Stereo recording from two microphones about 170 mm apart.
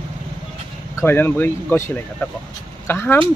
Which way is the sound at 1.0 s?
15° left (ahead or behind).